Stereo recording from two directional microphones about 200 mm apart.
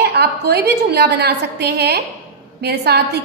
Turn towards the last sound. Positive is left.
turn(degrees=-55)  # may be behind; listen again after turning